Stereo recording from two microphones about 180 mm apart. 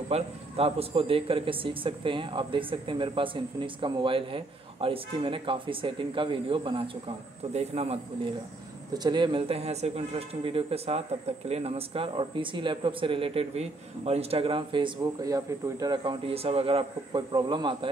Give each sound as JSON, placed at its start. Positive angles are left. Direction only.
{"t": 0.1, "sound": "a man's voice", "side_deg": -35}